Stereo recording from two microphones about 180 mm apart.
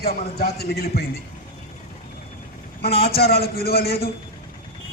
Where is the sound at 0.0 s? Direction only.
60° left (ahead or behind).